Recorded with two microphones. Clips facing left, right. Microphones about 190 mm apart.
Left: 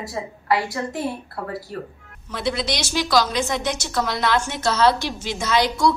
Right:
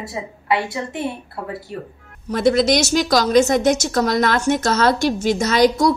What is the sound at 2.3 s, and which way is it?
Speech, 45° right (ahead or behind).